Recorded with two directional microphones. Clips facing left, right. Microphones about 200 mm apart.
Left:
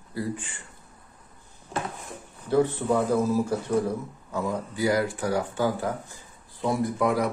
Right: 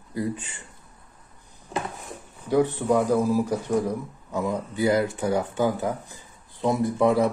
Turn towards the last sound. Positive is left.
turn(degrees=-25)  # may be behind; listen again after turning